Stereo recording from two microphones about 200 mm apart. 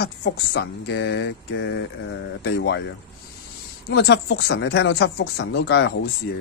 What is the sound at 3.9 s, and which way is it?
Speech, 55° left (ahead or behind).